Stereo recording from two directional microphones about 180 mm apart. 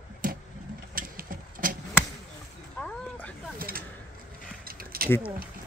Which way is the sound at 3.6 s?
55° right (ahead or behind).